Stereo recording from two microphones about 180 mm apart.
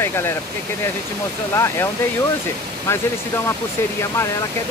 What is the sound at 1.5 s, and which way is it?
Speech, 15° left (ahead or behind).